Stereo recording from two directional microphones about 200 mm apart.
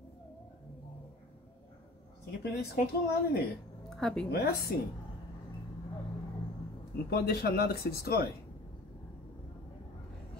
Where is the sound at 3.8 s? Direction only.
Centre (ahead or behind).